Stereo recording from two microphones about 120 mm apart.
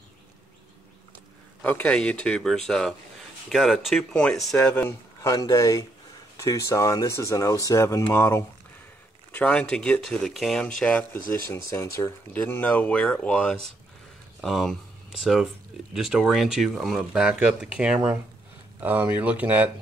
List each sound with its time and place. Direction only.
1.6 s speech: 10° left (ahead or behind)
4.8 s speech: 30° left (ahead or behind)
9.3 s speech: 10° left (ahead or behind)
11.4 s speech: 20° left (ahead or behind); by 14.8 s centre (ahead or behind)
15.9 s speech: centre (ahead or behind)